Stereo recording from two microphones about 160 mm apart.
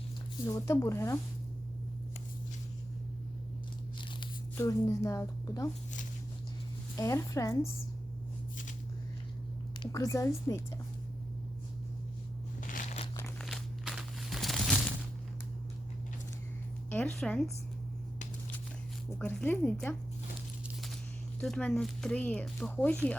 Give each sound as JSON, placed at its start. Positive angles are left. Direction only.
{"t": 0.4, "sound": "speech", "side_deg": 20}
{"t": 4.5, "sound": "a woman's voice", "side_deg": 20}
{"t": 6.9, "sound": "a woman's voice", "side_deg": 20}
{"t": 9.8, "sound": "a woman's voice", "side_deg": 20}
{"t": 12.6, "sound": "a sound", "side_deg": 50}
{"t": 13.4, "sound": "crumpling", "side_deg": 0}
{"t": 16.9, "sound": "speech", "side_deg": 5}
{"t": 19.2, "sound": "speech", "side_deg": 10}
{"t": 20.7, "sound": "a sound", "side_deg": 0}
{"t": 21.4, "sound": "speech", "side_deg": 0}